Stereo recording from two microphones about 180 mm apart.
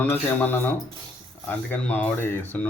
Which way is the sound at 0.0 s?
10° left (ahead or behind).